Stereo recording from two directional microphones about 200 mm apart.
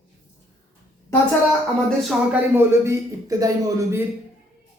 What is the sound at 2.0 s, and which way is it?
A man's voice, 10° right (ahead or behind).